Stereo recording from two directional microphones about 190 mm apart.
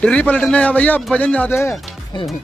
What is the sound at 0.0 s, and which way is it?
A man's voice, 5° left (ahead or behind).